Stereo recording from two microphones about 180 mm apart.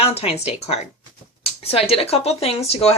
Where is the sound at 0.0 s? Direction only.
35° left (ahead or behind).